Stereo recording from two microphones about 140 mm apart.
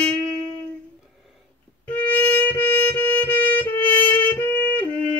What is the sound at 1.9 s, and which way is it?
Music, 10° left (ahead or behind).